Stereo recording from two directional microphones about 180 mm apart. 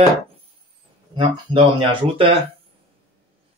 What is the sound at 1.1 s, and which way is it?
Speech, 30° right (ahead or behind).